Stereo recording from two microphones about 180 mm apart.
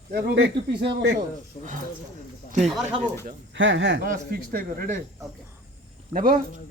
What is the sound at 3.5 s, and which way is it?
Speech, 90° right.